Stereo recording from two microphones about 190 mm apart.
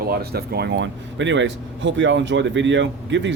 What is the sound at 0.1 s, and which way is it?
Speech, 55° right (ahead or behind).